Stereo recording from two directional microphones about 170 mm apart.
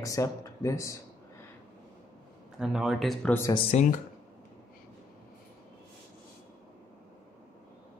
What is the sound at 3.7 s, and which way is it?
Speech, 40° left (ahead or behind).